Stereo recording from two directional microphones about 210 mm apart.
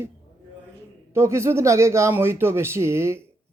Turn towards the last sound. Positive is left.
turn(degrees=-10)  # may be behind; listen again after turning